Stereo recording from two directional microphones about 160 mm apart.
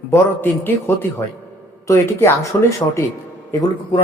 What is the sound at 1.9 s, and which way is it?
Speech, 15° left (ahead or behind).